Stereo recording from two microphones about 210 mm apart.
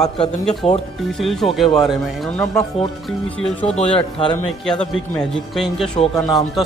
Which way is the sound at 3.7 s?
25° left (ahead or behind).